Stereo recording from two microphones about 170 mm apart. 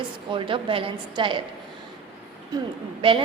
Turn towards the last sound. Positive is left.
turn(degrees=-30)  # may be behind; listen again after turning